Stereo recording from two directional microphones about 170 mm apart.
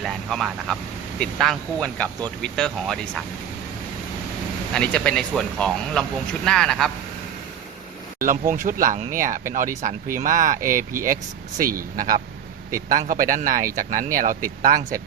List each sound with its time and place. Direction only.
0.0 s speech: centre (ahead or behind)
4.7 s speech: 5° left (ahead or behind)
8.2 s speech: 50° right (ahead or behind)